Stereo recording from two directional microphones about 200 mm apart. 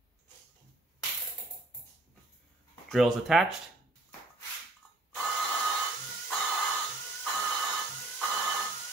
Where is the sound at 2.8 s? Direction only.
Centre (ahead or behind).